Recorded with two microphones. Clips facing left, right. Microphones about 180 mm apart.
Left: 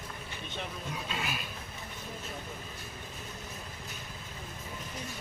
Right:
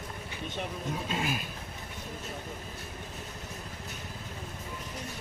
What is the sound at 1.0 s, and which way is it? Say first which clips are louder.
Speech: right 5 dB; 45° right (ahead or behind).